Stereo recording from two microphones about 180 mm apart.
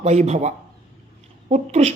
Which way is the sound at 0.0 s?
40° right (ahead or behind).